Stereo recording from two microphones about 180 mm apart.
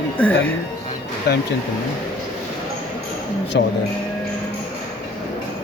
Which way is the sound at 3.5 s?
80° left.